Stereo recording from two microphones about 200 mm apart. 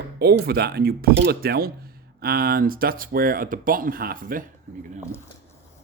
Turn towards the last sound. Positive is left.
turn(degrees=-45)  # may be behind; listen again after turning